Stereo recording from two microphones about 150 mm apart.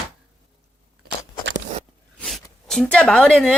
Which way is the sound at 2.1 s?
5° left (ahead or behind).